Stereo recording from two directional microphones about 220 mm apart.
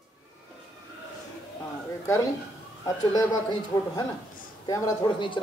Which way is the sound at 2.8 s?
15° left (ahead or behind).